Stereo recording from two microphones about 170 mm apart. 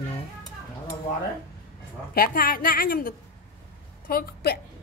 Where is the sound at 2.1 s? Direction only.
60° left (ahead or behind).